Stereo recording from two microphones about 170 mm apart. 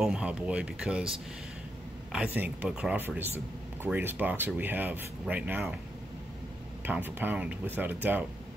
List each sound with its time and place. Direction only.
0.0 s speech: 5° right (ahead or behind)
2.1 s speech: 10° right (ahead or behind)
6.8 s speech: 10° right (ahead or behind)